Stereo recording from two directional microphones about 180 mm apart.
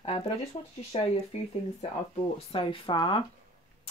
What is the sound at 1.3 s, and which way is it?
Speech, 35° left (ahead or behind).